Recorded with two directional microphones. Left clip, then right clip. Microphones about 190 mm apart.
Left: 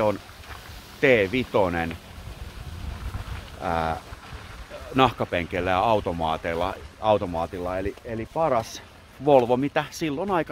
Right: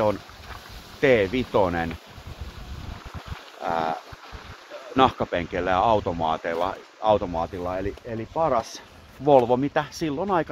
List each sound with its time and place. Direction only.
1.0 s speech: 10° left (ahead or behind)
3.6 s speech: 15° left (ahead or behind)